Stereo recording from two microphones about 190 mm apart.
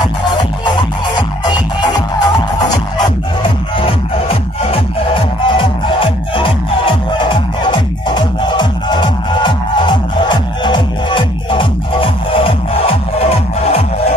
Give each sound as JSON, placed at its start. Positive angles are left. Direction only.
{"t": 0.4, "sound": "music", "side_deg": 25}